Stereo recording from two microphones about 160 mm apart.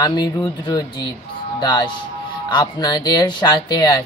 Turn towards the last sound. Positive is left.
turn(degrees=25)  # may be behind; listen again after turning